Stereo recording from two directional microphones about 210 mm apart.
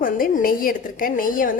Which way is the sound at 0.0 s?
40° left (ahead or behind).